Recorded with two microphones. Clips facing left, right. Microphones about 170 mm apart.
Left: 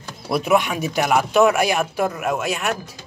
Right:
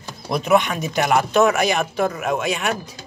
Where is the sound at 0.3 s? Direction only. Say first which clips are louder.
Right 1 dB; 5° left (ahead or behind).